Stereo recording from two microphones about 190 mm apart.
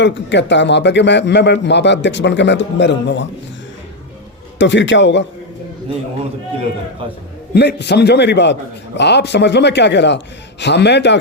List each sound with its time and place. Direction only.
0.0 s a man's voice: 70° left (ahead or behind)
4.5 s a man's voice: 70° left (ahead or behind)
7.5 s speech: 60° left (ahead or behind)